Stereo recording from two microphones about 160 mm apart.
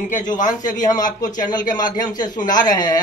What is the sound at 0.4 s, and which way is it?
Speech, 55° left (ahead or behind).